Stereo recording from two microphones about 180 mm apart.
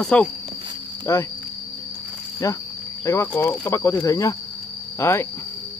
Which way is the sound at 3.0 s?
15° left (ahead or behind).